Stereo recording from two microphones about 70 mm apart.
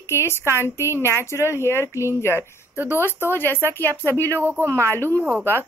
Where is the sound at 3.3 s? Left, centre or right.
Left.